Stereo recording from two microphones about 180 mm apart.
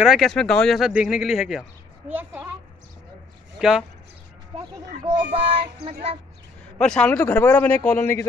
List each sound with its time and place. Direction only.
0.0 s a child's voice: centre (ahead or behind)
3.5 s speech: centre (ahead or behind)
4.5 s speech: 35° right (ahead or behind)
6.8 s a man's voice: 5° left (ahead or behind)